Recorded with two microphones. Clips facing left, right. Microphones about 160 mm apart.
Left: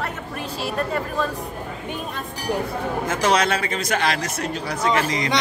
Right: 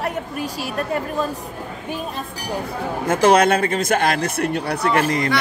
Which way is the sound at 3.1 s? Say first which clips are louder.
Right 7 dB; 55° right (ahead or behind).